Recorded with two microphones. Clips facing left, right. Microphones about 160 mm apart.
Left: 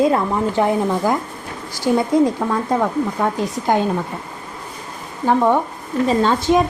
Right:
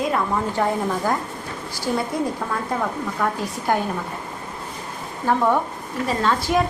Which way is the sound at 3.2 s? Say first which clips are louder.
Left 4 dB; 20° left (ahead or behind).